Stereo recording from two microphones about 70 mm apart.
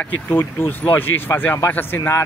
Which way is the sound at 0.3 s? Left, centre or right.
Left.